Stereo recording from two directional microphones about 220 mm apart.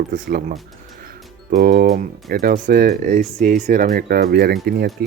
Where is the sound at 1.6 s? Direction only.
45° right (ahead or behind).